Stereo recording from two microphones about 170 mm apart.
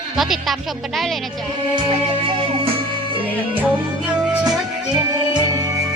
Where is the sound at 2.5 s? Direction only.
35° right (ahead or behind).